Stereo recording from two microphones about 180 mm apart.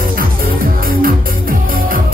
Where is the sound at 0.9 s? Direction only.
50° right (ahead or behind).